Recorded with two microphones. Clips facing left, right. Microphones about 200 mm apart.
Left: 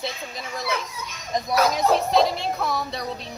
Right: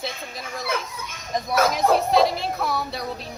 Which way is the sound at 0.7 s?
50° right (ahead or behind).